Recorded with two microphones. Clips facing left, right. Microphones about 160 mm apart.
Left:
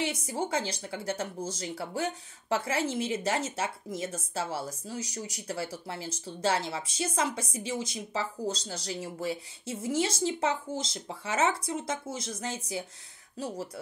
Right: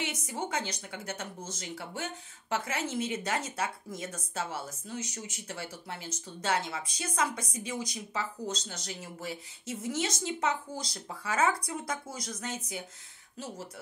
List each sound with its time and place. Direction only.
0.0 s speech: 30° left (ahead or behind)